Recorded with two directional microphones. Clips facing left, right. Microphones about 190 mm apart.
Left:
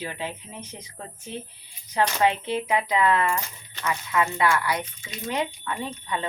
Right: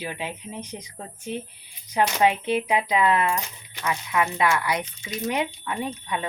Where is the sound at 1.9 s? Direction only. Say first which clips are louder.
Right 1 dB; 15° right (ahead or behind).